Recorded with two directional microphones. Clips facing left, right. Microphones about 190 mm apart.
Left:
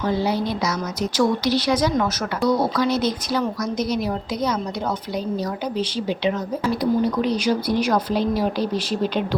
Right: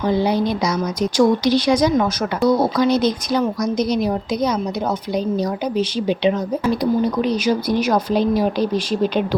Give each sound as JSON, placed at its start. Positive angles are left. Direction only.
{"t": 0.0, "sound": "a woman's voice", "side_deg": -20}